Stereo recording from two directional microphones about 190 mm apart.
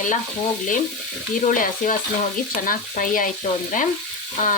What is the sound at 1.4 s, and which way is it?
Frying, 45° left (ahead or behind).